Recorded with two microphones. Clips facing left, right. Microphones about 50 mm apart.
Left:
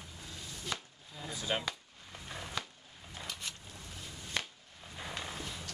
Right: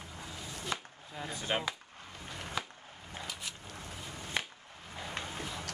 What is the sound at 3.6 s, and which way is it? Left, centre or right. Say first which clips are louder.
Boat: right 4 dB; right.